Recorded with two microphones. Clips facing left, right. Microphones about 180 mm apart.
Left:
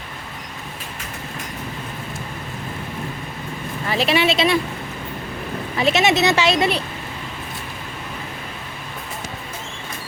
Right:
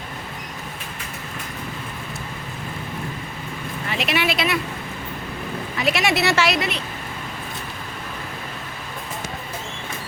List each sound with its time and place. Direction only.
3.8 s a woman's voice: 35° left (ahead or behind)
5.7 s a woman's voice: 25° left (ahead or behind)